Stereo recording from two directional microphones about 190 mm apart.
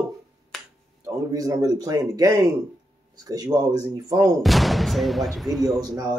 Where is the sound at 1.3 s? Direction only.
20° right (ahead or behind).